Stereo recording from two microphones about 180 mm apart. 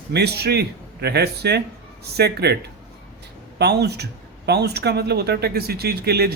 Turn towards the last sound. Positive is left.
turn(degrees=-60)  # may be behind; listen again after turning